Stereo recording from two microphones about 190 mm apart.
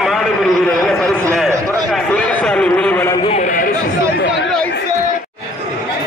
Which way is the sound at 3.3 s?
40° left (ahead or behind).